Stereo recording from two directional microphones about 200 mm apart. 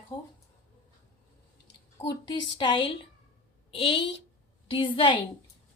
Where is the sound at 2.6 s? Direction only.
25° left (ahead or behind).